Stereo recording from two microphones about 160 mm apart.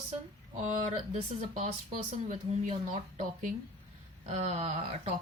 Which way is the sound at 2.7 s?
45° right (ahead or behind).